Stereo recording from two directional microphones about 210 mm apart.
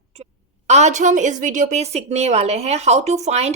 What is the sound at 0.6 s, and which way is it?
A woman's voice, 30° right (ahead or behind).